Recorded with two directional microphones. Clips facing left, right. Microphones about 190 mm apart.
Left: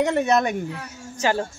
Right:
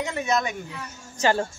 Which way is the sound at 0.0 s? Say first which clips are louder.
Left 6 dB; 60° left (ahead or behind).